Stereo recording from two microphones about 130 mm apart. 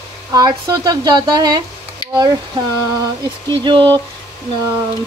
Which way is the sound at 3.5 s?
40° right (ahead or behind).